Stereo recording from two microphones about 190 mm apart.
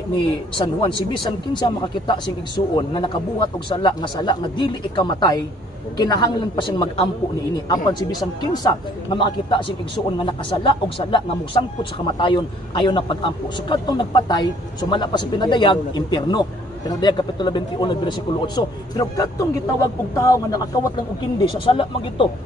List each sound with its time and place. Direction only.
0.6 s a man's voice: 25° left (ahead or behind)
21.5 s speech: 30° left (ahead or behind)